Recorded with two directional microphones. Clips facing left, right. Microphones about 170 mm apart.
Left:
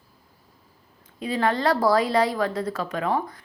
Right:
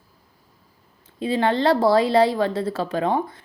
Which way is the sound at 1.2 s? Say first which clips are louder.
Right 3 dB; 25° right (ahead or behind).